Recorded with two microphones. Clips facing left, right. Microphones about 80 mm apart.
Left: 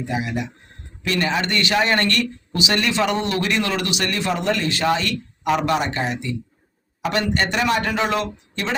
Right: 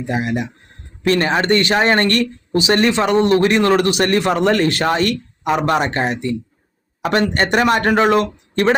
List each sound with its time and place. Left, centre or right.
0.1 s speech: right